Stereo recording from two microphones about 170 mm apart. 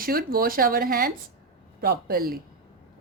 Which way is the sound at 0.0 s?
60° right (ahead or behind).